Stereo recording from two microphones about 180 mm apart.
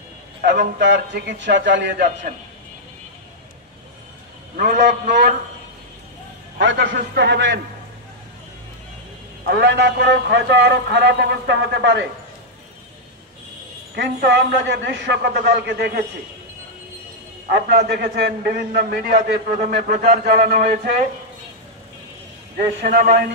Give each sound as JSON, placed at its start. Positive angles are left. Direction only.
{"t": 0.4, "sound": "a man's voice", "side_deg": -75}
{"t": 4.6, "sound": "a man's voice", "side_deg": -55}
{"t": 6.6, "sound": "a man's voice", "side_deg": -90}
{"t": 9.5, "sound": "a man's voice", "side_deg": -70}
{"t": 13.9, "sound": "a man's voice", "side_deg": -75}
{"t": 17.5, "sound": "a man's voice", "side_deg": -60}
{"t": 19.6, "sound": "a man's voice", "side_deg": -45}
{"t": 20.3, "sound": "a man's voice", "side_deg": -60}
{"t": 22.8, "sound": "a man's voice", "side_deg": -60}